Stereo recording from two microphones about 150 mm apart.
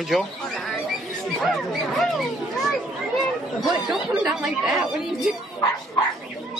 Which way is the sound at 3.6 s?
Centre (ahead or behind).